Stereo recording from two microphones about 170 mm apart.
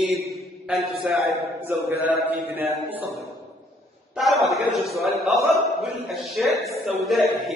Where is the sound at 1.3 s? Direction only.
15° right (ahead or behind).